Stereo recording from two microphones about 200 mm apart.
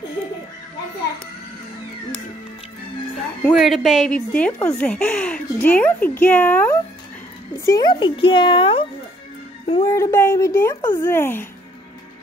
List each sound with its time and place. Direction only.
3.2 s a woman's voice: centre (ahead or behind); by 8.8 s 25° left (ahead or behind)
9.8 s a woman's voice: 15° left (ahead or behind)